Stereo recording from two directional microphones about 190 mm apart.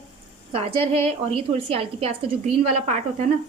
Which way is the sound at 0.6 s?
30° right (ahead or behind).